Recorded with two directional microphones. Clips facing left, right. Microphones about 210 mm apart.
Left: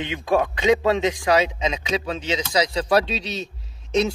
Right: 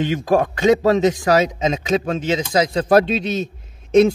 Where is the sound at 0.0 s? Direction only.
45° right (ahead or behind).